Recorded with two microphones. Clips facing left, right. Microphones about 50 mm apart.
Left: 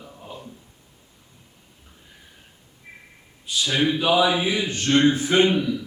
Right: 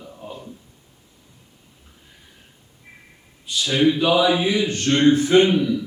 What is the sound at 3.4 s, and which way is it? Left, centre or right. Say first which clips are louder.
A man's voice: right 4 dB; centre.